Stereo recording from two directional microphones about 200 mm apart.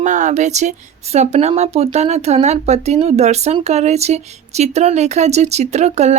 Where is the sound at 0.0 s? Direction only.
35° right (ahead or behind).